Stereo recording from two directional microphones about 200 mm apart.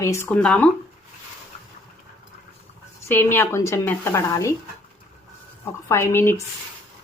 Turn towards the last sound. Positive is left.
turn(degrees=10)  # may be behind; listen again after turning